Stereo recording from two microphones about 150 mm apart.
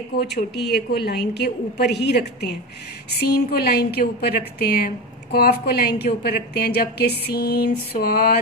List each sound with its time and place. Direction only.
0.1 s a woman's voice: 90° left